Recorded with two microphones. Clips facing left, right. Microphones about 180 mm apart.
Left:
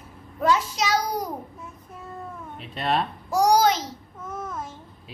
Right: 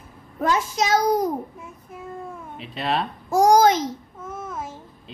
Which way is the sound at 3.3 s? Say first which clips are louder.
Right 4 dB; 50° right (ahead or behind).